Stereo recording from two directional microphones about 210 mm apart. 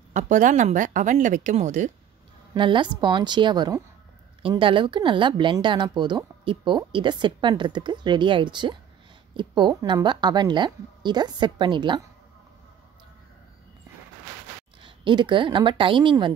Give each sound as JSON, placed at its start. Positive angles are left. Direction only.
{"t": 0.1, "sound": "a woman's voice", "side_deg": -35}
{"t": 2.5, "sound": "speech", "side_deg": -20}
{"t": 14.8, "sound": "a woman's voice", "side_deg": -25}